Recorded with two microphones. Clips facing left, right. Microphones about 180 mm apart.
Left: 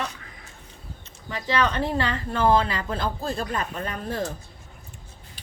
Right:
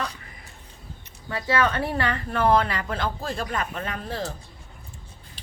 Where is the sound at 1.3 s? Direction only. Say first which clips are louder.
Right 1 dB; 20° left (ahead or behind); by 4.3 s 45° left (ahead or behind).